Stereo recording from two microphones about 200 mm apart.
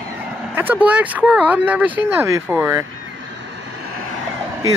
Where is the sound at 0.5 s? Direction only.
10° right (ahead or behind).